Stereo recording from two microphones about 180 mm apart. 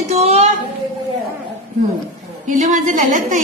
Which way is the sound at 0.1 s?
35° right (ahead or behind).